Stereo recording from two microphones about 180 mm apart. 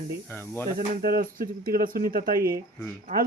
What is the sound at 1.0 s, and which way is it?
Speech, 55° right (ahead or behind).